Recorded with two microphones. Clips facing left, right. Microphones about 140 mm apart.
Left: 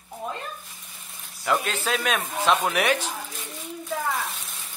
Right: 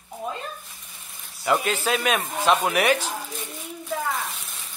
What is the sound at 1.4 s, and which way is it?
Speech, 5° right (ahead or behind).